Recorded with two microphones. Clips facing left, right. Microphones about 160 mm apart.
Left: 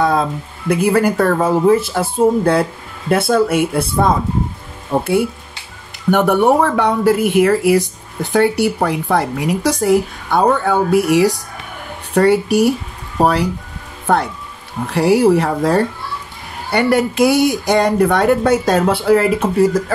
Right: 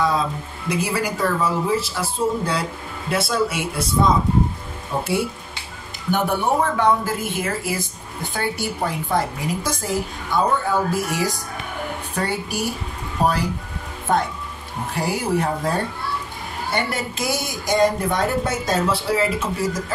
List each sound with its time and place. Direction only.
0.0 s speech: 55° left (ahead or behind)
6.0 s speech: 70° left (ahead or behind)